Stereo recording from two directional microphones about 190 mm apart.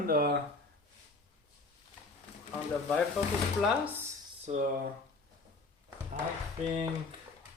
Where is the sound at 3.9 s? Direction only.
10° right (ahead or behind).